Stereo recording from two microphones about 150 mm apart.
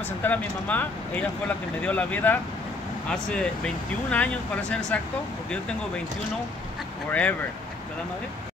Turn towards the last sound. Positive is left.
turn(degrees=10)  # may be behind; listen again after turning